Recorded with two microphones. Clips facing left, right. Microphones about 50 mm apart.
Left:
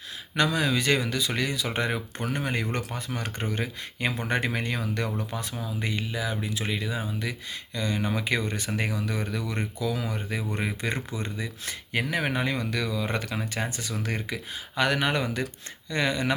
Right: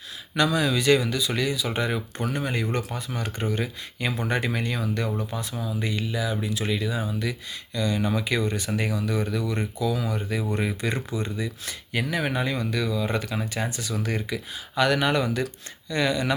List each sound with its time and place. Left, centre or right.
0.3 s speech: left
5.5 s speech: left
13.5 s speech: left